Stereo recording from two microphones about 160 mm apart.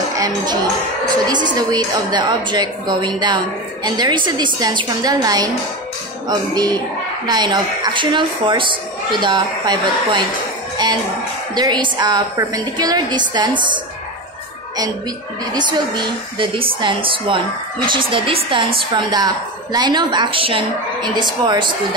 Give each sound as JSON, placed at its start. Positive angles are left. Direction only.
{"t": 1.0, "sound": "a woman's voice", "side_deg": -25}
{"t": 11.5, "sound": "a woman's voice", "side_deg": -25}
{"t": 15.5, "sound": "a woman's voice", "side_deg": -30}